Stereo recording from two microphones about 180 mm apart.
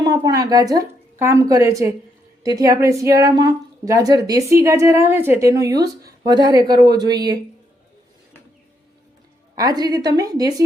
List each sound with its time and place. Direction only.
0.0 s a woman's voice: 20° right (ahead or behind)
9.6 s speech: 20° right (ahead or behind)